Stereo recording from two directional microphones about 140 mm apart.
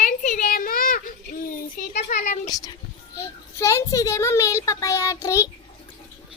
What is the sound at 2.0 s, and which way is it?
Speech, 65° left (ahead or behind).